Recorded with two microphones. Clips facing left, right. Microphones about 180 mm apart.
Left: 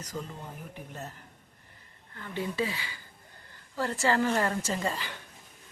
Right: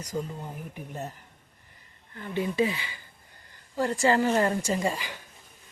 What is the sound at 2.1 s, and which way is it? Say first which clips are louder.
Speech: right 5 dB; 20° right (ahead or behind).